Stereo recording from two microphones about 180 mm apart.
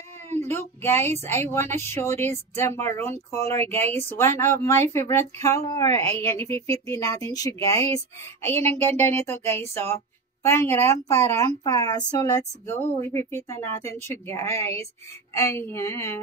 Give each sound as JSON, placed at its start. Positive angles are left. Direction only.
{"t": 0.5, "sound": "a woman's voice", "side_deg": 15}